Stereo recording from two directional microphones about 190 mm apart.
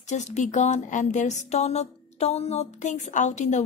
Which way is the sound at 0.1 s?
40° left (ahead or behind).